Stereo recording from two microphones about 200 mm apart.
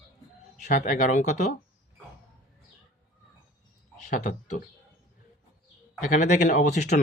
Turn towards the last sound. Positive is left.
turn(degrees=35)  # may be behind; listen again after turning